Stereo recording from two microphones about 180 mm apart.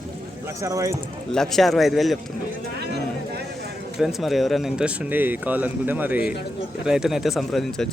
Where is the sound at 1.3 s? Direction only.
Centre (ahead or behind).